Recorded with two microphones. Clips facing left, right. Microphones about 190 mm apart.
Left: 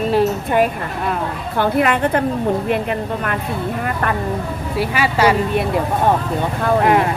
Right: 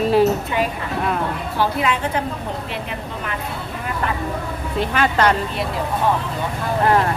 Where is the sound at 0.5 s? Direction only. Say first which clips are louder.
Left 5 dB; 50° left (ahead or behind).